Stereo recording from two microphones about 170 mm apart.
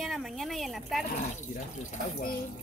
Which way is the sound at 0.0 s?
Centre (ahead or behind).